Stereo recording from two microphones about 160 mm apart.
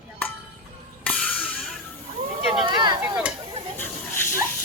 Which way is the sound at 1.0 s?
5° left (ahead or behind).